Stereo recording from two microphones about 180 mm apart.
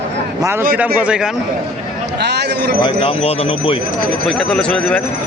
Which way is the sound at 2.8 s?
30° left (ahead or behind).